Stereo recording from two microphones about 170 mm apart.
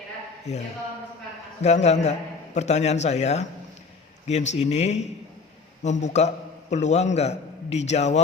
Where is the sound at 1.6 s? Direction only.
40° left (ahead or behind).